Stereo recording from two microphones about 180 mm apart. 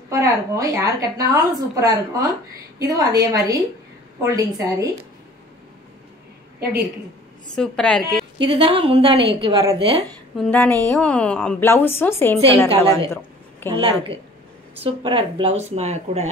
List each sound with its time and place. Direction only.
0.1 s a woman's voice: 15° right (ahead or behind)
7.5 s a woman's voice: 5° left (ahead or behind)
8.4 s a woman's voice: 30° right (ahead or behind)
10.3 s a woman's voice: 5° left (ahead or behind)
14.8 s speech: 30° right (ahead or behind)